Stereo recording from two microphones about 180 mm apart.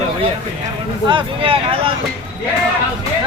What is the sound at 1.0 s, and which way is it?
Speech, 30° right (ahead or behind).